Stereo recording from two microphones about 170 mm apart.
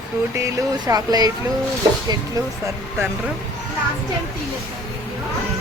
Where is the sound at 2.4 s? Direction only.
20° right (ahead or behind).